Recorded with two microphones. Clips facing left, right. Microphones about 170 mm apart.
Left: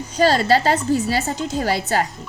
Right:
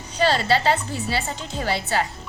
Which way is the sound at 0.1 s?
40° left (ahead or behind).